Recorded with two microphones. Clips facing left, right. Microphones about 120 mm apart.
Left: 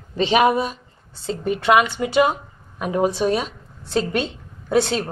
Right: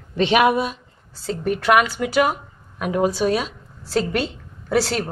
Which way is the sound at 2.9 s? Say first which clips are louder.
Even; centre (ahead or behind).